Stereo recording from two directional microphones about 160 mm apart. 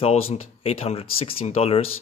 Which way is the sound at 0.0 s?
40° left (ahead or behind).